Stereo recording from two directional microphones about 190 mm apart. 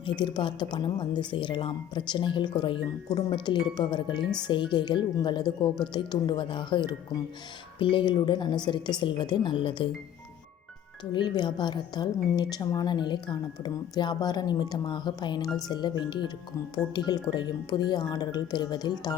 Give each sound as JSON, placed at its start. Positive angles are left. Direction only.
{"t": 0.0, "sound": "speech", "side_deg": 25}
{"t": 11.1, "sound": "speech", "side_deg": 25}